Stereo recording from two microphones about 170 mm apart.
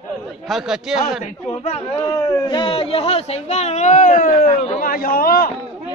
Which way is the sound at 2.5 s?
30° left (ahead or behind).